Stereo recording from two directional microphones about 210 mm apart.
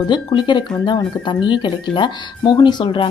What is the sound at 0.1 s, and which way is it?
Speech, 20° left (ahead or behind).